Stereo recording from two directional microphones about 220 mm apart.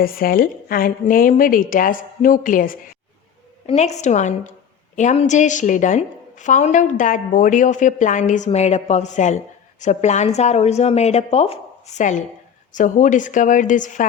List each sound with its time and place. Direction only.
0.0 s a woman's voice: 40° left (ahead or behind)